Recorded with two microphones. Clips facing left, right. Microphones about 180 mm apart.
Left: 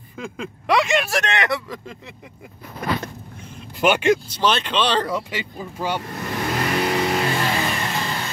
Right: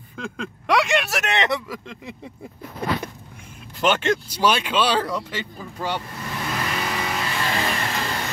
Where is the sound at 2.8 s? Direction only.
30° right (ahead or behind).